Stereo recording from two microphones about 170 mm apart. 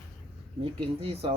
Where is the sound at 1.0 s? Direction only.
35° right (ahead or behind).